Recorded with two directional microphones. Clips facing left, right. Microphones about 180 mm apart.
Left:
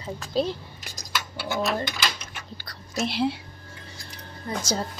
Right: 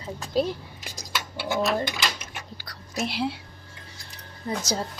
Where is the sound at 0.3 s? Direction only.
10° right (ahead or behind).